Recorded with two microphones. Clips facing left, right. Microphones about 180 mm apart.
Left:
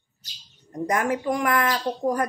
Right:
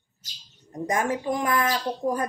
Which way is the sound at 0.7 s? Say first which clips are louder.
Left 2 dB; 20° right (ahead or behind).